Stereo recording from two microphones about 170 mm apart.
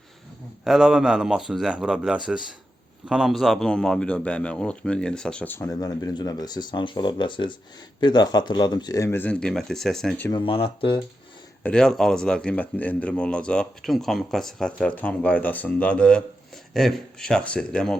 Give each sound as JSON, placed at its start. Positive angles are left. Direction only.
{"t": 0.6, "sound": "speech", "side_deg": -5}
{"t": 10.2, "sound": "speech", "side_deg": 30}
{"t": 11.6, "sound": "speech", "side_deg": 5}